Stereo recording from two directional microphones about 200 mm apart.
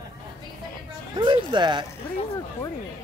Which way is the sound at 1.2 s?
25° right (ahead or behind).